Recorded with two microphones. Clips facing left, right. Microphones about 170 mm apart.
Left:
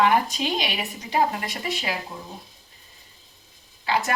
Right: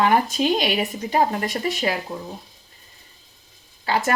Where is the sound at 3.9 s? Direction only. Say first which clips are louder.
Right 2 dB; 45° right (ahead or behind).